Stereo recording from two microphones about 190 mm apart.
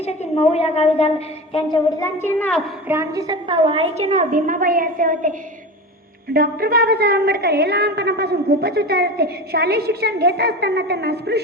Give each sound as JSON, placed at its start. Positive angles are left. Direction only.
{"t": 0.0, "sound": "a woman's voice", "side_deg": 35}
{"t": 1.5, "sound": "a woman's voice", "side_deg": 20}
{"t": 2.8, "sound": "a woman's voice", "side_deg": -15}
{"t": 6.3, "sound": "a woman's voice", "side_deg": -50}